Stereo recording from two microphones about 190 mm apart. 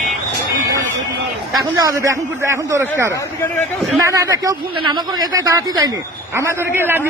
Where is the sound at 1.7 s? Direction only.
15° right (ahead or behind).